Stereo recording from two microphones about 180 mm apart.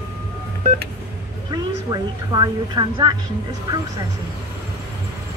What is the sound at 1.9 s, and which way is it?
Speech, 25° right (ahead or behind).